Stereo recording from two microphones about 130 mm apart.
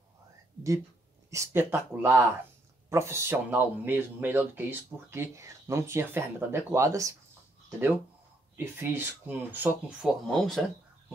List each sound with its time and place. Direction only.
1.3 s speech: 20° right (ahead or behind)
8.5 s speech: 15° right (ahead or behind)
10.2 s speech: 5° left (ahead or behind)